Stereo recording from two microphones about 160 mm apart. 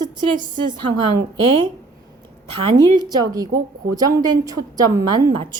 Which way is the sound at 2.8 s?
25° right (ahead or behind).